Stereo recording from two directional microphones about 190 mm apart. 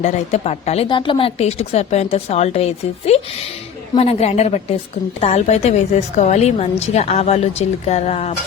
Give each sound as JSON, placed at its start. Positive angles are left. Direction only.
{"t": 0.0, "sound": "a woman's voice", "side_deg": 35}